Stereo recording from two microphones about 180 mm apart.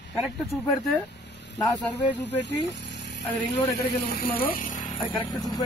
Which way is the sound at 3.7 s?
55° left (ahead or behind).